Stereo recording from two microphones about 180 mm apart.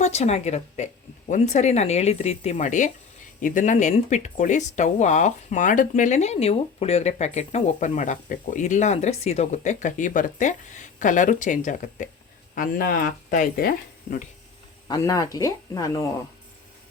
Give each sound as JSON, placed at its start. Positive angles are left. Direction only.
{"t": 0.0, "sound": "speech", "side_deg": 40}
{"t": 14.8, "sound": "speech", "side_deg": 20}